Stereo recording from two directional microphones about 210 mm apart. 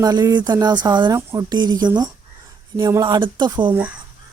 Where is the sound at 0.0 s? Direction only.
20° right (ahead or behind).